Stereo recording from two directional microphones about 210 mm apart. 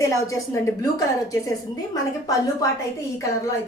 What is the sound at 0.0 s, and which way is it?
A woman's voice, 15° left (ahead or behind).